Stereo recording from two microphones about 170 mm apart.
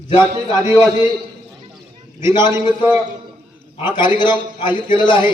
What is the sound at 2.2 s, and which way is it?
Speech, 15° right (ahead or behind).